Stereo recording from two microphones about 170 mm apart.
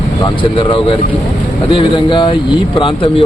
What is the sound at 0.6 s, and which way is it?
Speech, 30° left (ahead or behind).